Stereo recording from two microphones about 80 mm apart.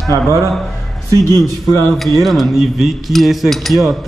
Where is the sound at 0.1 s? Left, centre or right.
Right.